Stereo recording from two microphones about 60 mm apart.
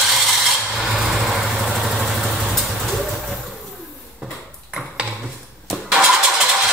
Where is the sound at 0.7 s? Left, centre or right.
Centre.